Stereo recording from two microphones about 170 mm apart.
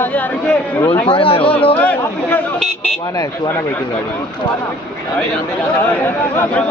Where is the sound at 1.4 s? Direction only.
10° left (ahead or behind).